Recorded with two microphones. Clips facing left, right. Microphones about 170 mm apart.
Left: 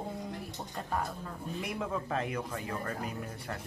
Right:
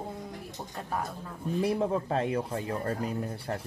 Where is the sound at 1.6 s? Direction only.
35° right (ahead or behind).